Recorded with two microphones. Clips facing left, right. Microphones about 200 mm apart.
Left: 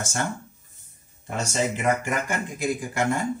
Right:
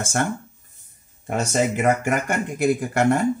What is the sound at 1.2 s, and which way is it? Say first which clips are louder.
Speech: right 5 dB; 55° right (ahead or behind).